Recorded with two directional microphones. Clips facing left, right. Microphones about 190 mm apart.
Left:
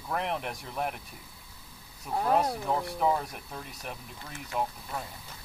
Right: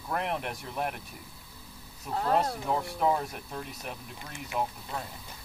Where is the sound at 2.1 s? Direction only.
10° left (ahead or behind).